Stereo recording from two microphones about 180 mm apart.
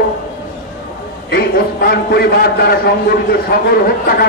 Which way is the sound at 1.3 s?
60° left (ahead or behind).